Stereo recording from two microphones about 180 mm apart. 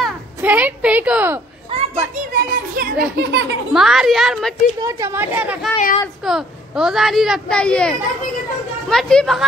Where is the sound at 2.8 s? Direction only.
50° right (ahead or behind).